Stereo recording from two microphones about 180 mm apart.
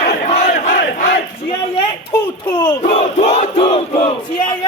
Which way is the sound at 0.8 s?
65° left (ahead or behind).